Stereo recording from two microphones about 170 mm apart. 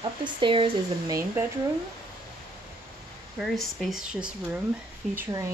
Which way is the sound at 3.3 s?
Centre (ahead or behind).